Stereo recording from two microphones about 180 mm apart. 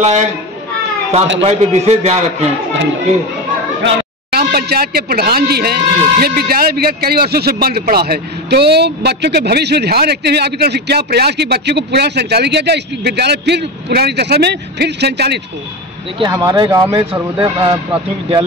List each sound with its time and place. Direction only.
0.0 s a man's voice: 40° right (ahead or behind)
1.4 s a man's voice: 35° right (ahead or behind)
4.3 s speech: 60° right (ahead or behind)
16.2 s speech: 20° right (ahead or behind)